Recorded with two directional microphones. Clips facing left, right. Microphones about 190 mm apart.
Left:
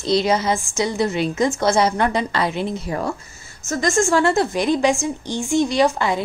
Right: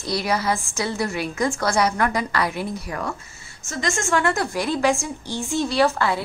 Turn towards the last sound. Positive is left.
turn(degrees=20)  # may be behind; listen again after turning